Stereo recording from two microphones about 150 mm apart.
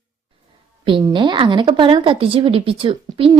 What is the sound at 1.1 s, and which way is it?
A woman's voice, 30° right (ahead or behind).